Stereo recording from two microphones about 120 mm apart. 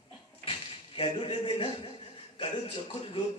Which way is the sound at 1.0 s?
50° left (ahead or behind).